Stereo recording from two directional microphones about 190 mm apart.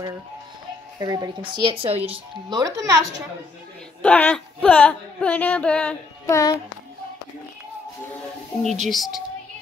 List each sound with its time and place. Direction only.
0.9 s speech: 20° right (ahead or behind)
2.6 s a woman's voice: 15° right (ahead or behind)
4.0 s speech: 5° left (ahead or behind)
8.8 s speech: centre (ahead or behind)